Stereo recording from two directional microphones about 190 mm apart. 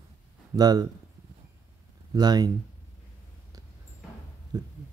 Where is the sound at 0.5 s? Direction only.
20° right (ahead or behind).